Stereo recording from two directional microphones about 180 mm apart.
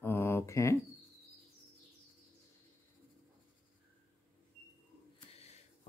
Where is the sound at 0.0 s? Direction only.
10° left (ahead or behind).